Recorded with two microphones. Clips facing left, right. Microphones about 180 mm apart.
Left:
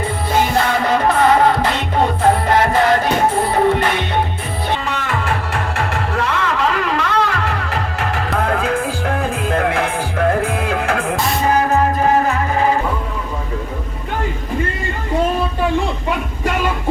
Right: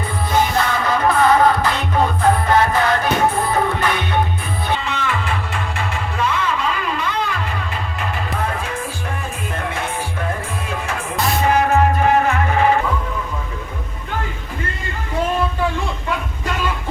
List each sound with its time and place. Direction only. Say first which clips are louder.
0.5 s music: left 3 dB; 30° left (ahead or behind)
4.9 s music: left 2 dB; 50° left (ahead or behind)